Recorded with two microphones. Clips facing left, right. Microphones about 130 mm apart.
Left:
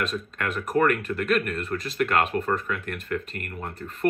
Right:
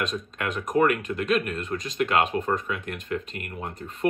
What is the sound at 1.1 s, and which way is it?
Speech, 20° right (ahead or behind).